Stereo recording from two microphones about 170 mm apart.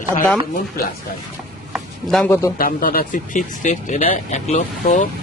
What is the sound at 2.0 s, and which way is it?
Speech, 5° left (ahead or behind).